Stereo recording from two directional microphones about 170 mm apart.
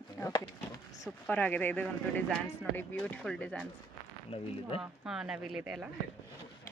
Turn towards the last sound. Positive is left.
turn(degrees=-5)  # may be behind; listen again after turning